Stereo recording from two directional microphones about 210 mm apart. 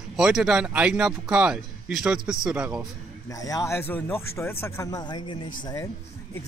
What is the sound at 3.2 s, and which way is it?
Speech, 15° left (ahead or behind).